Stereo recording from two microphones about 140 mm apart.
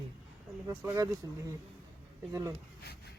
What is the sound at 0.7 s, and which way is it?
Speech, 15° right (ahead or behind).